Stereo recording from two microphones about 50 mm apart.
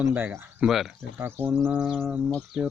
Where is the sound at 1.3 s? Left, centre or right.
Right.